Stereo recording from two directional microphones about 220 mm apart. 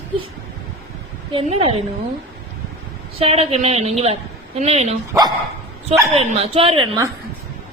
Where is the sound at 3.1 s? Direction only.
25° right (ahead or behind).